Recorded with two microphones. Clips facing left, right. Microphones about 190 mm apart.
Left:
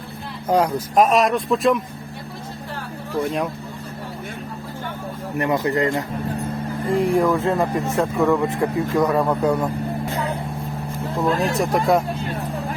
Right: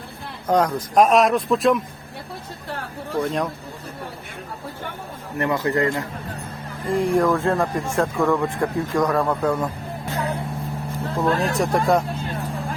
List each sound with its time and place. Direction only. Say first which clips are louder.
0.4 s speech: left 1 dB; 10° left (ahead or behind)
3.2 s speech: even; 10° left (ahead or behind)
5.4 s a man's voice: left 1 dB; 20° left (ahead or behind)
6.9 s speech: even; centre (ahead or behind)
11.2 s speech: left 1 dB; centre (ahead or behind)